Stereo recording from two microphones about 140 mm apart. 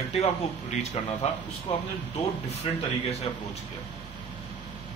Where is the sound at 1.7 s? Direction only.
40° left (ahead or behind).